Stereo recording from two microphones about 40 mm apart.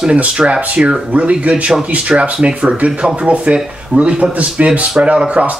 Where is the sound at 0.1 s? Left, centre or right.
Right.